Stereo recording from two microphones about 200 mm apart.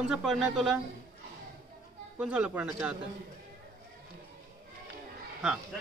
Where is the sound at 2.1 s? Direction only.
5° right (ahead or behind).